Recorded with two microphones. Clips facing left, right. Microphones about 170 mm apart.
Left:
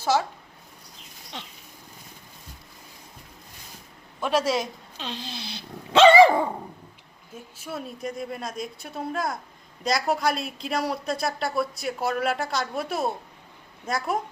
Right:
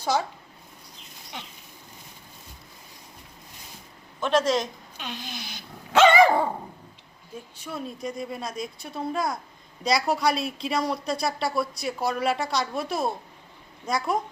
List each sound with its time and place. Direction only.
4.2 s speech: 10° left (ahead or behind)
4.9 s speech: 30° left (ahead or behind)
7.6 s speech: 5° left (ahead or behind)